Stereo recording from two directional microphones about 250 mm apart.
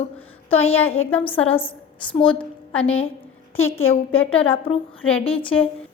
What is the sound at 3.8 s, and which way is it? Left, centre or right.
Speech, left.